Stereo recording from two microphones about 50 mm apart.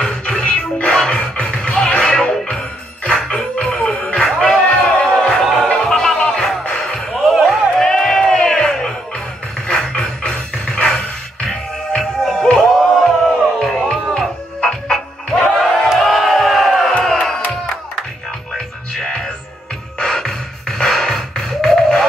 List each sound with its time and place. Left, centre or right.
0.0 s music: centre
0.4 s music: centre
3.9 s music: left
4.2 s music: centre
7.9 s crowd: centre
9.7 s music: centre
12.9 s a sound: centre
14.1 s music: centre
15.9 s crowd: centre
18.9 s music: centre